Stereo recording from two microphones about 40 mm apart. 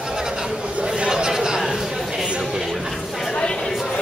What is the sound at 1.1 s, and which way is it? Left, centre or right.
Chatter, centre.